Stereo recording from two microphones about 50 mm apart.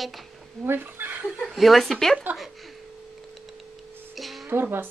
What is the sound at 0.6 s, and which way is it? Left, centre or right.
Speech, right.